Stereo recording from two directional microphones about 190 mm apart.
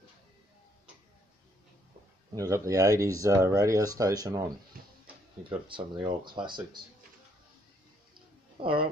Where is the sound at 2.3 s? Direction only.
15° right (ahead or behind).